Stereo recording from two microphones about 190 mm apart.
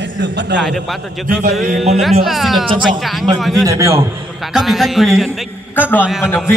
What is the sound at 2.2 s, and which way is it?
Speech, centre (ahead or behind).